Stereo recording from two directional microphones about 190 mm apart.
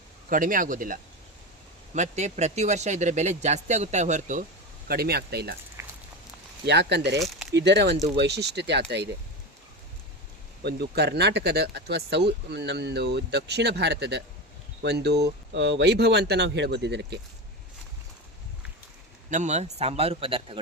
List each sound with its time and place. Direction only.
0.3 s speech: 45° right (ahead or behind)
4.9 s speech: 55° right (ahead or behind)
5.8 s a sound: 15° right (ahead or behind)
6.7 s speech: 60° right (ahead or behind)
10.6 s speech: 60° right (ahead or behind)
19.3 s speech: 40° right (ahead or behind)